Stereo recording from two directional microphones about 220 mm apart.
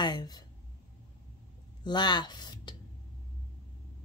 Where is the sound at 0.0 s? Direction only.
20° left (ahead or behind).